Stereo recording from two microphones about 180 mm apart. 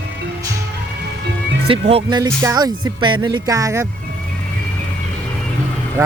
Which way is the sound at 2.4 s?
20° right (ahead or behind).